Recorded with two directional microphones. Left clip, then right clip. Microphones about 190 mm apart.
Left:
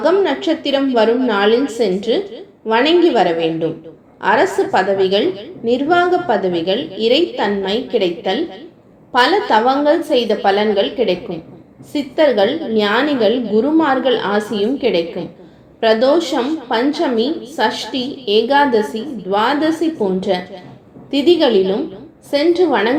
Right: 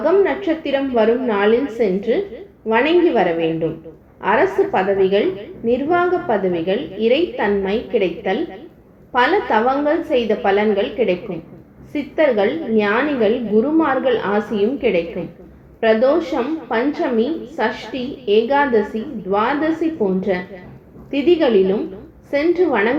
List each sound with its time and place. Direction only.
0.0 s a woman's voice: 35° left (ahead or behind)